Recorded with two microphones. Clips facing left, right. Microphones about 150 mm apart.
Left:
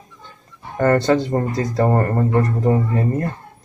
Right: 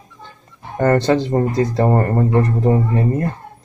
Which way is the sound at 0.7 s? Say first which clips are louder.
Right 1 dB; 20° right (ahead or behind).